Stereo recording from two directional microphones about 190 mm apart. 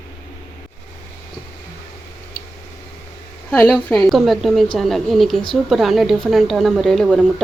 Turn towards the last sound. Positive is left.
turn(degrees=5)  # may be behind; listen again after turning